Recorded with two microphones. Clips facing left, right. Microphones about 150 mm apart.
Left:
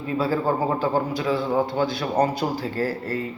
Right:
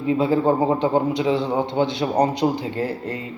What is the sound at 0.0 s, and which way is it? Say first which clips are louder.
Speech: right 5 dB; 20° right (ahead or behind).